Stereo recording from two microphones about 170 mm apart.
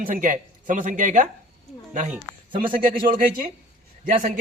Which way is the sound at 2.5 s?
30° right (ahead or behind).